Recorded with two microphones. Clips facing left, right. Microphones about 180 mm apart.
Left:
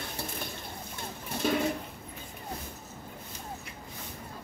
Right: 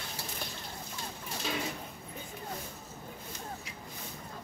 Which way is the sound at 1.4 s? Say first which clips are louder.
Left 9 dB; 55° left (ahead or behind).